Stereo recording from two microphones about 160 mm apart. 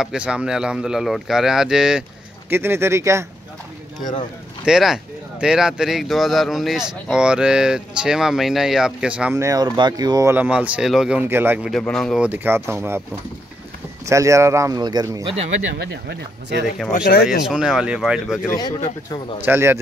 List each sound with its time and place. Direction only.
0.0 s speech: 5° right (ahead or behind)
2.5 s speech: 15° right (ahead or behind)
4.6 s speech: 5° right (ahead or behind)
9.3 s speech: 20° right (ahead or behind)
10.3 s speech: 10° right (ahead or behind)
11.7 s speech: 5° left (ahead or behind)
12.2 s speech: 10° right (ahead or behind)
14.0 s speech: 20° right (ahead or behind)
15.7 s speech: 90° right
17.5 s speech: 5° right (ahead or behind)
18.5 s speech: 25° left (ahead or behind)
19.4 s speech: 15° right (ahead or behind)